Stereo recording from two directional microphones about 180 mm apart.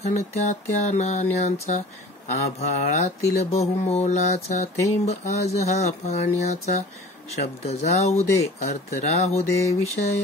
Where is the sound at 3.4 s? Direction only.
35° left (ahead or behind).